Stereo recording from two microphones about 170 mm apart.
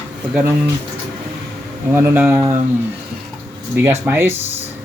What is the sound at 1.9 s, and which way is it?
Speech, 10° right (ahead or behind).